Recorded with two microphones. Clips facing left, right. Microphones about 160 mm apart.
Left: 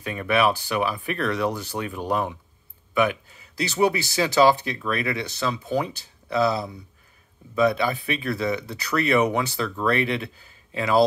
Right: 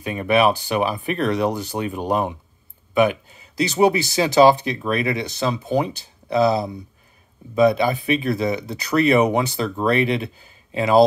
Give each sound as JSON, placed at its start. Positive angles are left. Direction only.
{"t": 0.0, "sound": "speech", "side_deg": -20}